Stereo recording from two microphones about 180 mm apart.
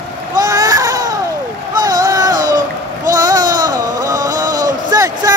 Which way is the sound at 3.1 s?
20° right (ahead or behind).